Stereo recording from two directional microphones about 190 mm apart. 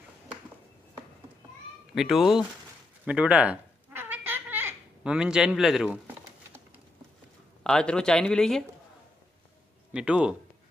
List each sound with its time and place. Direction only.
2.0 s speech: centre (ahead or behind)
3.1 s cat: 5° right (ahead or behind)
7.6 s speech: 5° left (ahead or behind)
9.9 s speech: 5° right (ahead or behind)